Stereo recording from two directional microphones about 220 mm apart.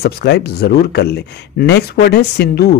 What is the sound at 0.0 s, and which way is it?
Speech, 45° left (ahead or behind).